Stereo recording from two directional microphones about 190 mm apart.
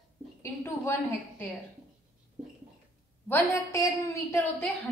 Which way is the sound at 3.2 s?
15° left (ahead or behind).